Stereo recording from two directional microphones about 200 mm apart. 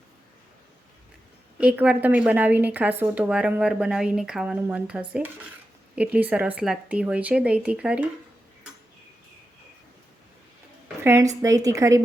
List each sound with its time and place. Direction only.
1.5 s a woman's voice: 5° right (ahead or behind)
11.0 s a woman's voice: 15° right (ahead or behind)